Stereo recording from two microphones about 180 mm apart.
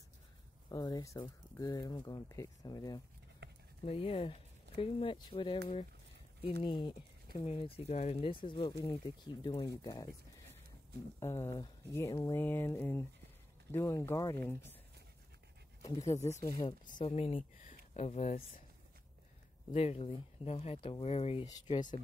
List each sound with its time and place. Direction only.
0.7 s speech: 20° left (ahead or behind)
3.4 s a sound: 65° right (ahead or behind)
3.8 s speech: 30° left (ahead or behind)
6.6 s speech: 25° left (ahead or behind)
11.1 s speech: 15° left (ahead or behind)
15.8 s speech: 20° left (ahead or behind)
16.8 s speech: 40° left (ahead or behind)
19.7 s speech: 35° left (ahead or behind)
21.5 s speech: 25° left (ahead or behind)